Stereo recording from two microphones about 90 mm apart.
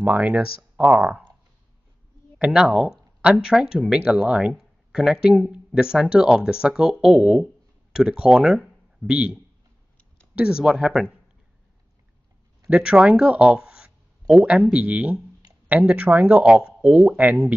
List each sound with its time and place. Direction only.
0.0 s speech: 15° right (ahead or behind)
2.3 s speech: 10° right (ahead or behind)
12.6 s speech: 10° right (ahead or behind)